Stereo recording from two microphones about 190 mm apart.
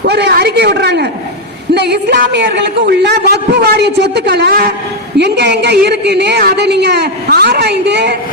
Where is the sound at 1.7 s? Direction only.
60° right (ahead or behind).